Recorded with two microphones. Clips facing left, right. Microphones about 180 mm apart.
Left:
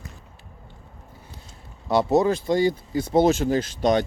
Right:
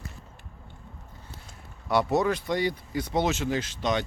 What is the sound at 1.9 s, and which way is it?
Speech, 25° left (ahead or behind).